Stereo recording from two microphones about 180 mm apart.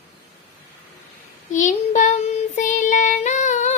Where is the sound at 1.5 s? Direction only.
45° left (ahead or behind).